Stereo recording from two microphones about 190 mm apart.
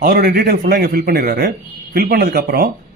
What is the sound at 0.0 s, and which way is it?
Speech, 50° right (ahead or behind).